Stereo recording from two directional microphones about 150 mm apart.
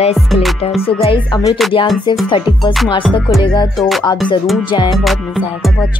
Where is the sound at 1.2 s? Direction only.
25° left (ahead or behind).